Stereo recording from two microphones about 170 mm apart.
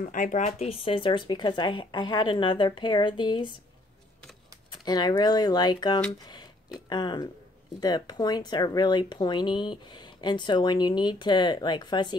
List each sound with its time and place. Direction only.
0.0 s speech: 50° left (ahead or behind); by 3.5 s 25° left (ahead or behind)
4.8 s speech: 25° left (ahead or behind)